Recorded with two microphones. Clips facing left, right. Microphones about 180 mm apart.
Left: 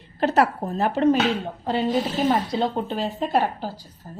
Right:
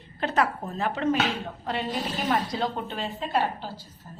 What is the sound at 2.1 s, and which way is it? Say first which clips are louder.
A woman's voice: left 5 dB; 30° left (ahead or behind).